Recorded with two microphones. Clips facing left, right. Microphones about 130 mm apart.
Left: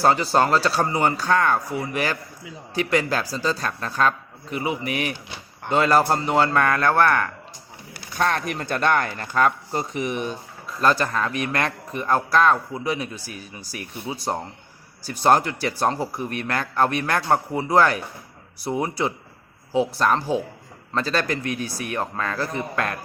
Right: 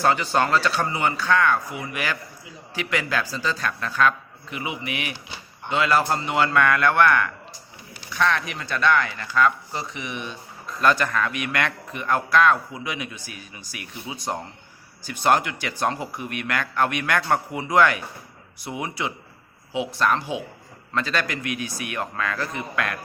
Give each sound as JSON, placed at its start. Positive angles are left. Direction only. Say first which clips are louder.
{"t": 0.0, "sound": "speech", "louder": "left 2 dB", "side_deg": 35}